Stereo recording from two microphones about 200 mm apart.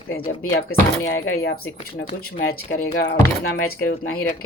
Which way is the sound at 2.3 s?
50° left (ahead or behind).